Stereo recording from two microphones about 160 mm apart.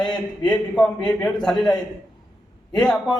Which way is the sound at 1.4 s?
5° left (ahead or behind).